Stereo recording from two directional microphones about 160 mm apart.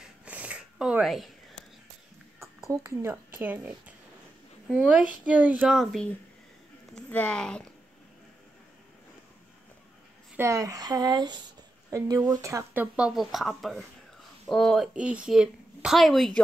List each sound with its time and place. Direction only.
0.0 s a sound: 10° right (ahead or behind)
2.7 s a woman's voice: 15° right (ahead or behind); by 7.7 s 5° left (ahead or behind)
10.3 s a woman's voice: 20° right (ahead or behind); by 16.3 s centre (ahead or behind)